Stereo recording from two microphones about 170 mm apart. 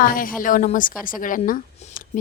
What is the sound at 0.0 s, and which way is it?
A woman's voice, 55° left (ahead or behind).